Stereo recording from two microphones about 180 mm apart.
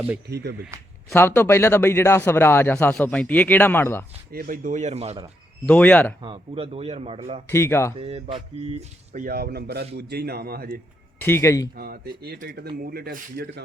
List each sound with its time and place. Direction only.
0.3 s speech: 65° right (ahead or behind)
1.1 s speech: 15° left (ahead or behind)
4.3 s speech: 50° right (ahead or behind); by 5.2 s 35° right (ahead or behind)
5.6 s speech: 10° left (ahead or behind)
6.2 s speech: 30° right (ahead or behind)
7.4 s speech: 15° left (ahead or behind)
7.9 s speech: 35° right (ahead or behind)
9.2 s speech: 55° right (ahead or behind)
11.2 s speech: 15° left (ahead or behind)
11.8 s speech: 60° right (ahead or behind)